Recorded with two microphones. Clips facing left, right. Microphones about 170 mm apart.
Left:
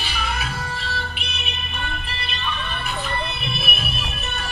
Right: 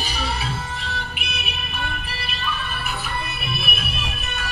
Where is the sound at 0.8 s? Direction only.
15° right (ahead or behind).